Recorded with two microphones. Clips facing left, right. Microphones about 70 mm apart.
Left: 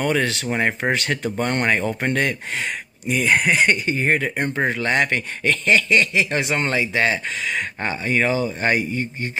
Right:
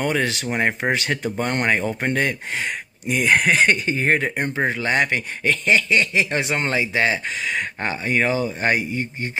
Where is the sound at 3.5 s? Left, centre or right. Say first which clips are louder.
Even; right.